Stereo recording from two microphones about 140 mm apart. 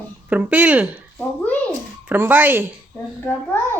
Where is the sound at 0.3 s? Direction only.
10° right (ahead or behind).